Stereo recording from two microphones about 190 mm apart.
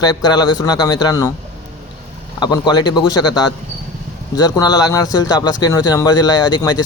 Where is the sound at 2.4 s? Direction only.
20° left (ahead or behind).